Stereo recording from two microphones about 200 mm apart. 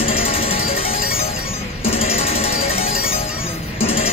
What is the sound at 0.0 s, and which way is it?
Music, 30° left (ahead or behind).